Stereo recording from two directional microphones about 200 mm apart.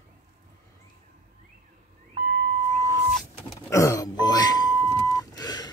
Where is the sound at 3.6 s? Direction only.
15° left (ahead or behind).